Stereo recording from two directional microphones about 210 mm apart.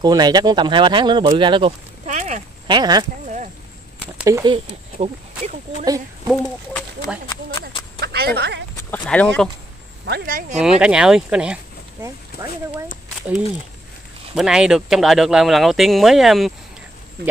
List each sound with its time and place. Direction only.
0.0 s speech: 20° right (ahead or behind)
2.0 s a sound: 35° right (ahead or behind)
2.7 s speech: 20° right (ahead or behind)
4.2 s speech: 15° right (ahead or behind)
4.9 s speech: 35° right (ahead or behind)
6.3 s speech: 15° left (ahead or behind)
8.0 s a sound: 50° right (ahead or behind)
8.4 s speech: 55° right (ahead or behind)
8.9 s speech: 5° left (ahead or behind)
10.0 s speech: 45° right (ahead or behind)
10.6 s speech: 5° right (ahead or behind)
14.3 s speech: centre (ahead or behind)